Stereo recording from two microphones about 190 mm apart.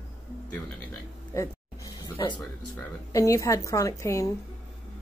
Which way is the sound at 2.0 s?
25° left (ahead or behind).